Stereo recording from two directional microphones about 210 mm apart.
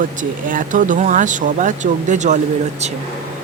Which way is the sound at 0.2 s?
40° right (ahead or behind).